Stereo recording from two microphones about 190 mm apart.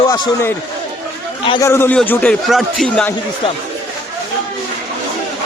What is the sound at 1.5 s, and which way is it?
A man's voice, 15° left (ahead or behind).